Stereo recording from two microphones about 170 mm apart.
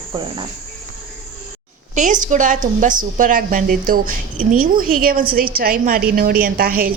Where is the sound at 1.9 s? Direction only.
45° right (ahead or behind).